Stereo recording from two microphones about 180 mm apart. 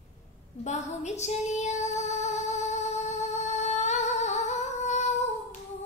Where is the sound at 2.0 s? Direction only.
40° left (ahead or behind).